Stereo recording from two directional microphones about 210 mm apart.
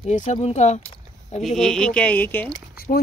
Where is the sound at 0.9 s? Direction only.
30° left (ahead or behind).